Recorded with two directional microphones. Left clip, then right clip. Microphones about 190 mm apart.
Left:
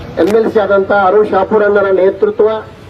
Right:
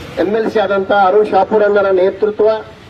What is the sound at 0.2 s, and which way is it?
Speech, 35° right (ahead or behind).